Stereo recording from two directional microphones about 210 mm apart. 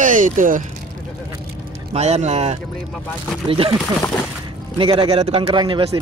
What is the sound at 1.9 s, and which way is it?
A man's voice, 30° right (ahead or behind).